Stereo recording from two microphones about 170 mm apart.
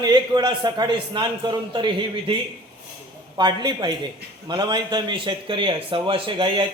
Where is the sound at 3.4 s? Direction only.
25° right (ahead or behind).